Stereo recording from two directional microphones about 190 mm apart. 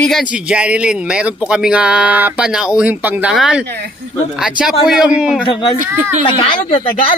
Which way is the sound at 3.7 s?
60° right (ahead or behind).